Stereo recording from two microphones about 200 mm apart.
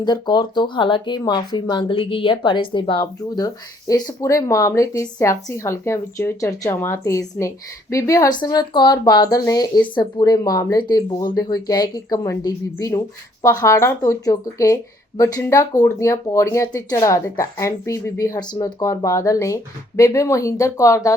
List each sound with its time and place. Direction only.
0.0 s speech: 20° left (ahead or behind)